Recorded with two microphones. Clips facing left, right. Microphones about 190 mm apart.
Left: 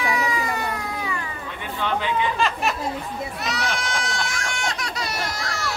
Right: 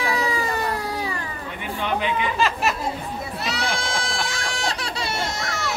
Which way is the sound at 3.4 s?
30° right (ahead or behind).